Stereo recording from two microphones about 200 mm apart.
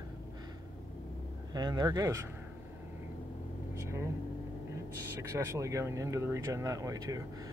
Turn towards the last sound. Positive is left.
turn(degrees=-15)  # may be behind; listen again after turning